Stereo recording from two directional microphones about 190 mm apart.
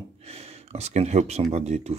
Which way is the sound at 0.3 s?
35° right (ahead or behind).